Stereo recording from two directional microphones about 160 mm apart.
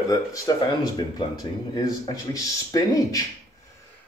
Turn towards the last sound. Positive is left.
turn(degrees=20)  # may be behind; listen again after turning